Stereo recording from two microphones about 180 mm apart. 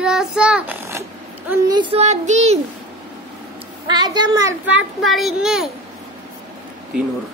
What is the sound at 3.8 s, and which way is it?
Child singing, 25° right (ahead or behind).